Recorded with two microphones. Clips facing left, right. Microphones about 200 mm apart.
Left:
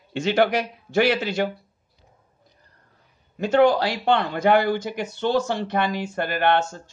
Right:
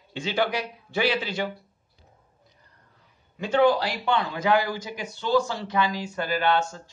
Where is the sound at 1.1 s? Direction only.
45° left (ahead or behind).